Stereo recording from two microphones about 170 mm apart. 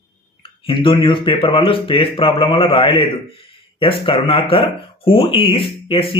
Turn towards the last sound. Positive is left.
turn(degrees=30)  # may be behind; listen again after turning